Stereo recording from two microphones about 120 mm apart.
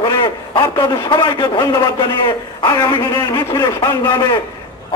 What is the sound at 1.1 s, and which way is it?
A man's voice, 45° left (ahead or behind).